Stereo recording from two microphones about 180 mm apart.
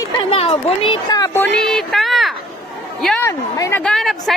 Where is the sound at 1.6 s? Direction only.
Centre (ahead or behind).